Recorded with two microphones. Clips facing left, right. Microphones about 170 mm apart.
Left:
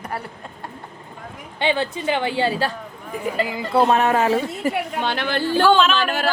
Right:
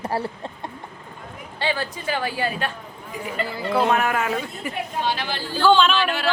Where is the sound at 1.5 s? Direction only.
20° left (ahead or behind).